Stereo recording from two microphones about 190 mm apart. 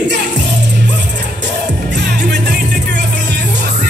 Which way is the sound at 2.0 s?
60° right (ahead or behind).